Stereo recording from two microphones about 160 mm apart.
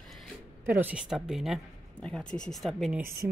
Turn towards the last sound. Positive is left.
turn(degrees=0)  # may be behind; listen again after turning